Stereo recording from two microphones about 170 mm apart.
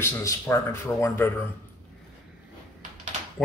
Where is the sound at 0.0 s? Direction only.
15° left (ahead or behind).